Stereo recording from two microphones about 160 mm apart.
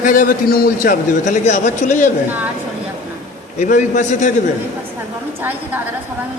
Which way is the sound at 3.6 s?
50° left (ahead or behind).